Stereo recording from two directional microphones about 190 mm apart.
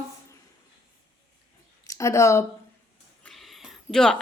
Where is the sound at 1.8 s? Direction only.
15° left (ahead or behind).